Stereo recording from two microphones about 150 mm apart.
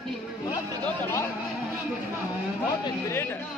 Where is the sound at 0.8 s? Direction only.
15° left (ahead or behind).